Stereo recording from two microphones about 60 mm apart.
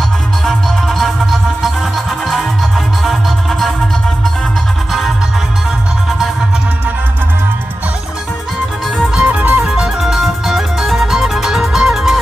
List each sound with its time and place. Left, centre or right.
0.5 s music: centre
3.0 s music: centre
9.2 s music: right
9.6 s music: centre